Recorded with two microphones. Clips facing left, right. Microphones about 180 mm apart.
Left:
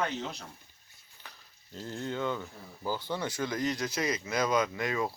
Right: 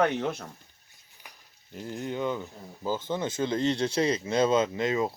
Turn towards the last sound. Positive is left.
turn(degrees=-25)  # may be behind; listen again after turning